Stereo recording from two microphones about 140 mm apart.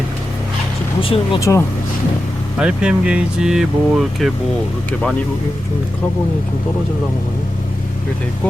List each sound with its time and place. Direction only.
1.0 s speech: 40° left (ahead or behind)
1.4 s speech: 20° left (ahead or behind)
2.6 s speech: 5° right (ahead or behind)